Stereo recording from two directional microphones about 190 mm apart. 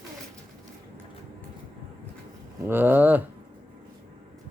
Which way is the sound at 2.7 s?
10° right (ahead or behind).